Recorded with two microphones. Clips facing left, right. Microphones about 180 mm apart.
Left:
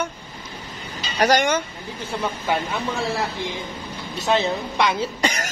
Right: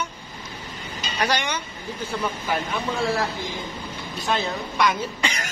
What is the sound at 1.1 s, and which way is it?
Speech, 45° left (ahead or behind).